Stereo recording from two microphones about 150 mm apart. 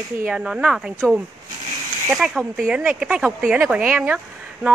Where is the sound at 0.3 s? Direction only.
5° right (ahead or behind).